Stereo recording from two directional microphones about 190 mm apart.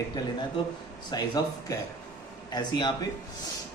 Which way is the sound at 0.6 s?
25° left (ahead or behind).